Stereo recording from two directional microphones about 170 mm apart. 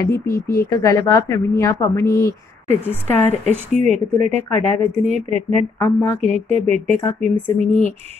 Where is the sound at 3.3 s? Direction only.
40° right (ahead or behind).